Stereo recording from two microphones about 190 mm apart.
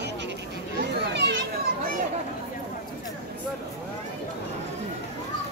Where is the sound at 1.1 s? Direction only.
70° right (ahead or behind).